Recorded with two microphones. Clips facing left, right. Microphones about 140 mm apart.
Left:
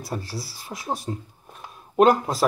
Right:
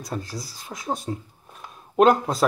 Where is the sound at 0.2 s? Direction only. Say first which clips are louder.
Even; 20° right (ahead or behind).